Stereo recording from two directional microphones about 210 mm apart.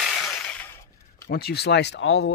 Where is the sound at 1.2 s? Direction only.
50° left (ahead or behind).